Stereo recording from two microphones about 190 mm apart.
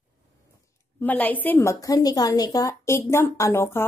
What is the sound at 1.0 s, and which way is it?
A woman's voice, 10° left (ahead or behind).